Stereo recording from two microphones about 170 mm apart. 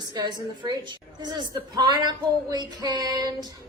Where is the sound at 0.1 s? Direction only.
25° right (ahead or behind).